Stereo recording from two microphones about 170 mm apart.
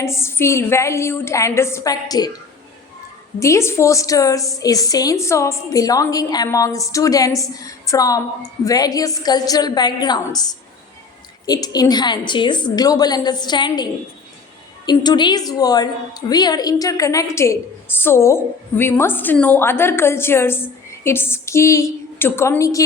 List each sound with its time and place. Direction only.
0.0 s a woman's voice: 15° left (ahead or behind)
3.4 s a woman's voice: 15° left (ahead or behind)
14.8 s a woman's voice: 25° left (ahead or behind)